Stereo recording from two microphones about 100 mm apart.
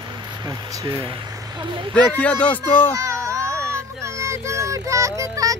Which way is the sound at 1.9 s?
10° left (ahead or behind).